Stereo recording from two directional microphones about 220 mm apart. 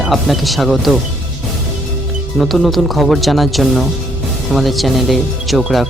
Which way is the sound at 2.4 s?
Centre (ahead or behind).